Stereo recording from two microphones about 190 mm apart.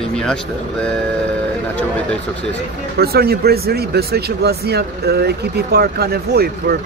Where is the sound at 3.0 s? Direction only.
55° right (ahead or behind).